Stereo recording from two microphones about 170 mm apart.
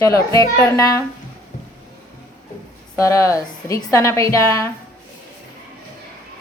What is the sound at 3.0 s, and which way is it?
A woman's voice, 20° left (ahead or behind).